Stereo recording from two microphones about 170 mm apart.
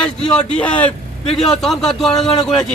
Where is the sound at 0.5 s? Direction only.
5° left (ahead or behind).